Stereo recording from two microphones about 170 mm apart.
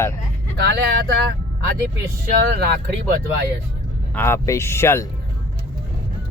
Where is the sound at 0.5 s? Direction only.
75° right (ahead or behind).